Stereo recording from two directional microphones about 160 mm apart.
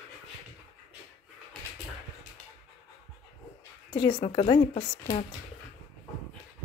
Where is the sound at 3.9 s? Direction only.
30° left (ahead or behind).